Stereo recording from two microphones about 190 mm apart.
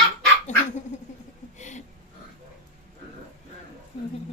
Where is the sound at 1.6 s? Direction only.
40° left (ahead or behind).